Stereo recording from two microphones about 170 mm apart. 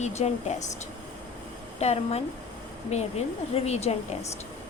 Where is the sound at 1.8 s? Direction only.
40° left (ahead or behind).